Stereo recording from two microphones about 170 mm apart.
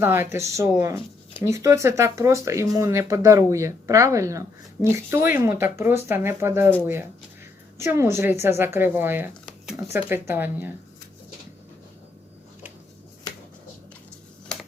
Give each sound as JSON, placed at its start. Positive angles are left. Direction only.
{"t": 0.0, "sound": "speech", "side_deg": -15}